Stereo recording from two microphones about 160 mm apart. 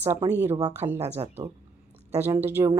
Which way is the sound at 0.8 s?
30° right (ahead or behind).